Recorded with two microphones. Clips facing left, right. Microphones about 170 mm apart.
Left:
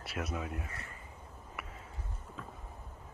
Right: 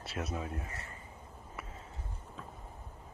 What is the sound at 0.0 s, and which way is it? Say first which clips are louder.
Speech: even; 25° right (ahead or behind).